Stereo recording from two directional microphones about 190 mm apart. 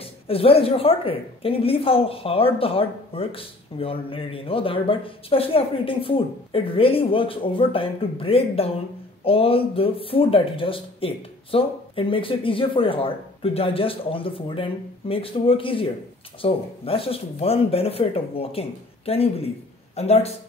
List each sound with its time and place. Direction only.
0.0 s speech: 30° left (ahead or behind)